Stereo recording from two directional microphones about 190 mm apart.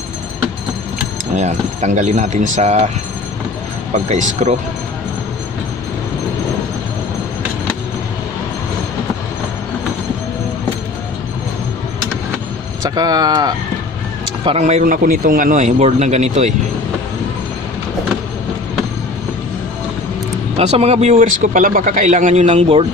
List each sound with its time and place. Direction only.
1.3 s speech: 35° right (ahead or behind)
4.1 s speech: 35° right (ahead or behind)
12.8 s speech: 20° right (ahead or behind)
14.4 s speech: 35° right (ahead or behind)
20.5 s speech: 35° right (ahead or behind)